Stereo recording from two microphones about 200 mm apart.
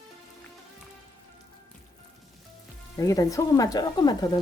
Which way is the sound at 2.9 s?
15° left (ahead or behind).